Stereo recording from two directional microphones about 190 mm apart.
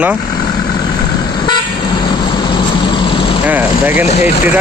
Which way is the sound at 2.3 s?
25° left (ahead or behind).